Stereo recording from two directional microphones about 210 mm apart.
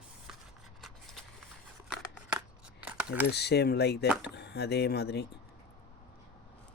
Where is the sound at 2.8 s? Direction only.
5° right (ahead or behind).